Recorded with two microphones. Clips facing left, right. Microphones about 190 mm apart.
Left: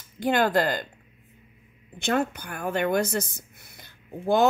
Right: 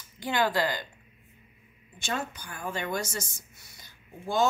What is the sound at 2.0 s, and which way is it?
A woman's voice, 60° left (ahead or behind).